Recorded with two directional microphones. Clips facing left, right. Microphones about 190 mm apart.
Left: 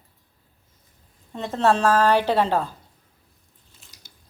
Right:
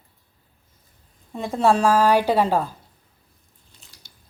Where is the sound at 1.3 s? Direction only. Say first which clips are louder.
Right 1 dB; 10° right (ahead or behind).